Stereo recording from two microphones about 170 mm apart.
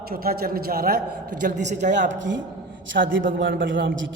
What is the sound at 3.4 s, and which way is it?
Speech, 90° right.